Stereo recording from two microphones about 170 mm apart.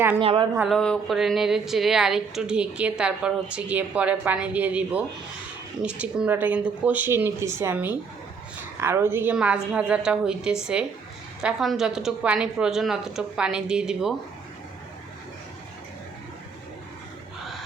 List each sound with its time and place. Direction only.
0.2 s a woman's voice: 30° right (ahead or behind)
0.7 s a woman's voice: centre (ahead or behind)